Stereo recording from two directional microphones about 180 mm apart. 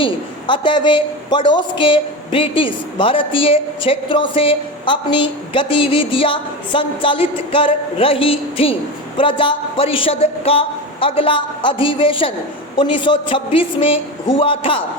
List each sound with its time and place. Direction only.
0.0 s a man's voice: 25° left (ahead or behind)